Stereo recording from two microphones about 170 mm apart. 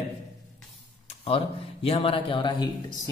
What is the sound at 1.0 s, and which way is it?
A man's voice, 35° left (ahead or behind).